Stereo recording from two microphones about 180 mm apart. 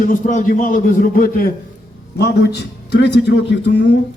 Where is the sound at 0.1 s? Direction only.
45° left (ahead or behind).